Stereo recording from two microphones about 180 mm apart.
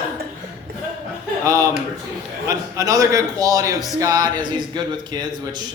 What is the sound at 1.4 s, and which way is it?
A man's voice, 20° right (ahead or behind).